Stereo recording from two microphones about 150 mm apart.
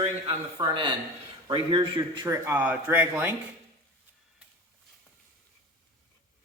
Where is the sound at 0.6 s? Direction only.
30° right (ahead or behind).